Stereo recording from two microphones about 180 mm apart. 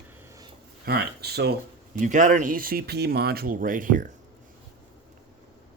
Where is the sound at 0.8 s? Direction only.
60° right (ahead or behind).